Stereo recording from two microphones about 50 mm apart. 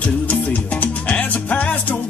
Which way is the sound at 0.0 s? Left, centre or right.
Left.